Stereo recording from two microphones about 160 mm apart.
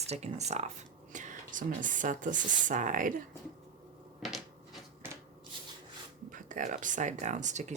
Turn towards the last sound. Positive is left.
turn(degrees=-45)  # may be behind; listen again after turning